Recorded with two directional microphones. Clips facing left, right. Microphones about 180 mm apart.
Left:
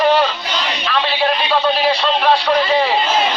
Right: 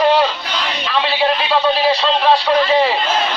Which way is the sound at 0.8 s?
5° right (ahead or behind).